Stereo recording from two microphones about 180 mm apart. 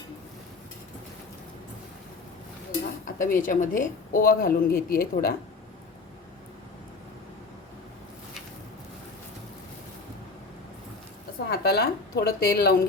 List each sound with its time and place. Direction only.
3.2 s speech: 45° left (ahead or behind)
11.4 s a woman's voice: 65° left (ahead or behind)